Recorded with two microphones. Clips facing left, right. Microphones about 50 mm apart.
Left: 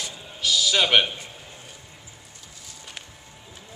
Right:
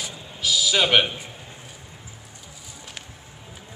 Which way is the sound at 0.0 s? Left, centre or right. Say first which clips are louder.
Even; centre.